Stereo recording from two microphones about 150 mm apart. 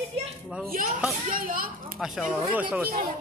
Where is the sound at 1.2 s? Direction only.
70° right (ahead or behind).